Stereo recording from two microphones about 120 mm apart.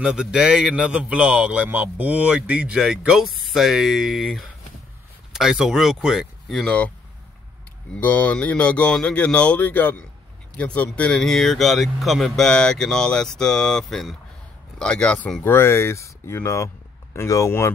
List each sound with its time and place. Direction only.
0.0 s speech: 5° right (ahead or behind)
6.6 s speech: 10° left (ahead or behind)
7.9 s speech: 10° left (ahead or behind)
15.4 s speech: 20° left (ahead or behind)